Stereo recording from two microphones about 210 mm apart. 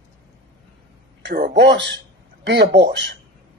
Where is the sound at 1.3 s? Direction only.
50° right (ahead or behind).